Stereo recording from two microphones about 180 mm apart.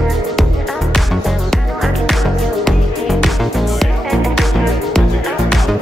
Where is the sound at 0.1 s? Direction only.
Centre (ahead or behind).